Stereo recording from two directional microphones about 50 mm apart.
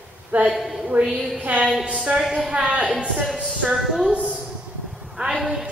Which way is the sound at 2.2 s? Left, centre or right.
Centre.